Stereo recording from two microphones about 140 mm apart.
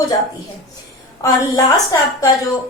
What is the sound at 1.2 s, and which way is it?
A woman's voice, 25° left (ahead or behind).